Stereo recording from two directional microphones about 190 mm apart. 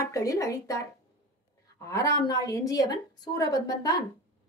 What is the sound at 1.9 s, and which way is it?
A woman's voice, 15° left (ahead or behind).